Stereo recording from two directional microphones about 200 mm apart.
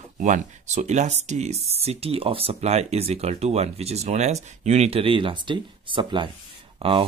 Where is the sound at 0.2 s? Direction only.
40° right (ahead or behind).